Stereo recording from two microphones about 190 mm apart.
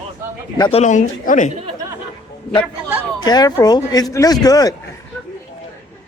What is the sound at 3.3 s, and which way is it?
Speech, 20° left (ahead or behind).